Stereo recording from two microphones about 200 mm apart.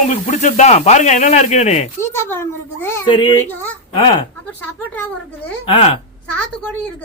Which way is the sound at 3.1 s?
25° left (ahead or behind).